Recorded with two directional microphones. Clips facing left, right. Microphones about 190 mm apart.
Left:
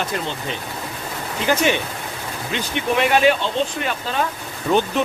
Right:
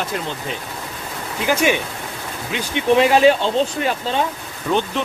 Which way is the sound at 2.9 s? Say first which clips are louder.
Right 4 dB; 30° right (ahead or behind).